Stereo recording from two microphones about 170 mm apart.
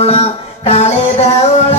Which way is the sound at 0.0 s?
40° left (ahead or behind).